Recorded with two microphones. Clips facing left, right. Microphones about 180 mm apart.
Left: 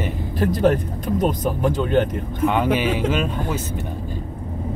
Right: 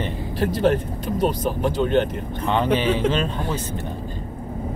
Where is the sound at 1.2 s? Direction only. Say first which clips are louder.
Even; 50° left (ahead or behind).